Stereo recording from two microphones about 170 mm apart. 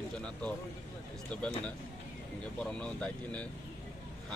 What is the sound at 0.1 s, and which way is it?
A man's voice, 5° left (ahead or behind).